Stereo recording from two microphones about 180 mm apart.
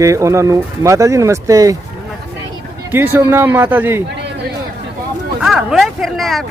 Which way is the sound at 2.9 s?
15° right (ahead or behind).